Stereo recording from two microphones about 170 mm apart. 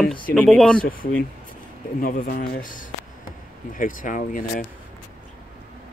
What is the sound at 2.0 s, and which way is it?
Speech, 55° left (ahead or behind).